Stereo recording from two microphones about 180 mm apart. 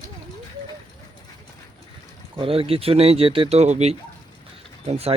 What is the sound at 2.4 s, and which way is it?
Speech, 30° right (ahead or behind).